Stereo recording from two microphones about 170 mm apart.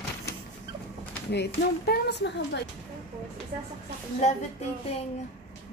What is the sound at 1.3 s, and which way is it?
Speech, 80° left.